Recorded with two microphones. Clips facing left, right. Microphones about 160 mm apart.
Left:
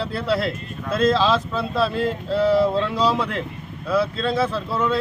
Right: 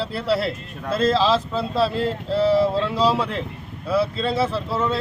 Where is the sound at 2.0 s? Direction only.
5° right (ahead or behind).